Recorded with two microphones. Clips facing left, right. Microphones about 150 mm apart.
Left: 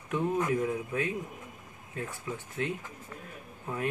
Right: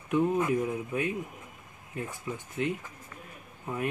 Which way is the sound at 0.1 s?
15° right (ahead or behind).